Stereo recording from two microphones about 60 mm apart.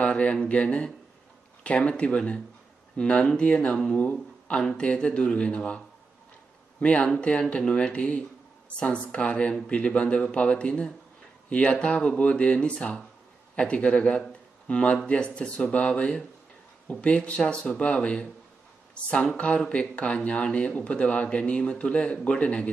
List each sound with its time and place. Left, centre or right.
0.0 s a man's voice: centre
19.3 s a man's voice: centre